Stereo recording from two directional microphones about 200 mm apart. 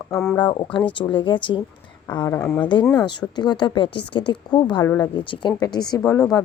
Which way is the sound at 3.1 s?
20° left (ahead or behind).